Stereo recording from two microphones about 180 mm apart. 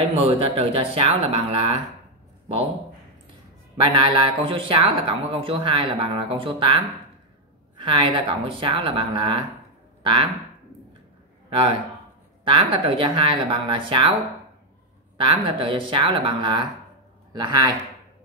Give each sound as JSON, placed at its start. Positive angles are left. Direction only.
{"t": 0.0, "sound": "speech", "side_deg": -35}
{"t": 3.7, "sound": "speech", "side_deg": -25}
{"t": 12.4, "sound": "speech", "side_deg": -30}
{"t": 15.1, "sound": "speech", "side_deg": -25}